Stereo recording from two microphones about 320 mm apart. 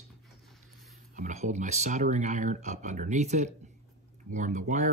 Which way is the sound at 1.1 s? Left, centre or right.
Right.